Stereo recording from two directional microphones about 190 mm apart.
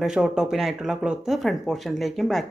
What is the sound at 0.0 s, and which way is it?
Speech, 5° right (ahead or behind).